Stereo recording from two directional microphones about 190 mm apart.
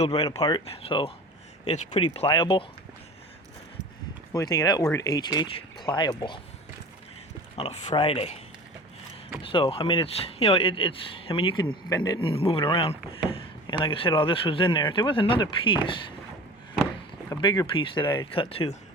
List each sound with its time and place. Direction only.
0.0 s speech: 20° left (ahead or behind); by 2.0 s 40° left (ahead or behind)
2.0 s speech: 30° left (ahead or behind)
4.3 s speech: 15° left (ahead or behind)
7.5 s speech: 35° left (ahead or behind)
9.4 s speech: 30° left (ahead or behind)
17.2 s speech: 20° left (ahead or behind)